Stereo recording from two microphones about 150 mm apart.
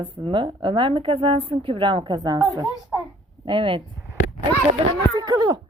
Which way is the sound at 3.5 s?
35° right (ahead or behind).